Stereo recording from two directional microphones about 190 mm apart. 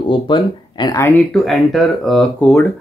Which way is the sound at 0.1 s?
25° left (ahead or behind).